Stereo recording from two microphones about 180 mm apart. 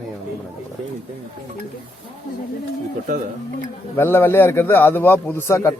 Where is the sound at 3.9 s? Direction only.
10° left (ahead or behind).